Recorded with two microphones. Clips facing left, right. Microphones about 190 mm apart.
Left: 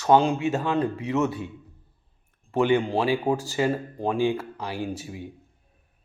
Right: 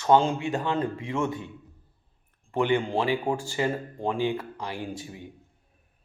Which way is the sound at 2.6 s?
10° left (ahead or behind).